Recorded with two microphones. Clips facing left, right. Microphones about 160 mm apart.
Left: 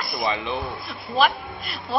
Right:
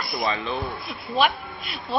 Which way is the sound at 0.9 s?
Centre (ahead or behind).